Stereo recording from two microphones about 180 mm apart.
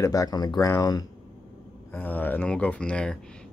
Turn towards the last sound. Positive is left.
turn(degrees=5)  # may be behind; listen again after turning